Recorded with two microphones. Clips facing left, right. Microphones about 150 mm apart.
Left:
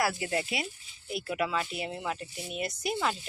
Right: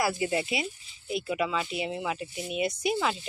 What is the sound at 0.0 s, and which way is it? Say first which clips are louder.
Speech: right 2 dB; 5° right (ahead or behind).